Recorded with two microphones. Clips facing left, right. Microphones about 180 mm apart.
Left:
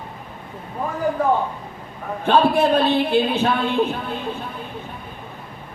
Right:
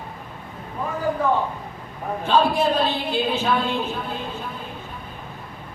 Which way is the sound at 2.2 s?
60° left (ahead or behind).